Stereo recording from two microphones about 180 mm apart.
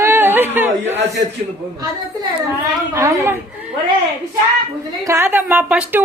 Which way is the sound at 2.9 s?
15° right (ahead or behind).